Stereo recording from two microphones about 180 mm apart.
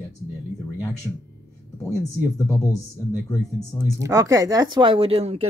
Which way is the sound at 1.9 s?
20° left (ahead or behind).